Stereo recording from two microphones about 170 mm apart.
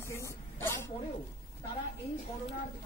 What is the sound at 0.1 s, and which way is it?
Throat clearing, 15° left (ahead or behind).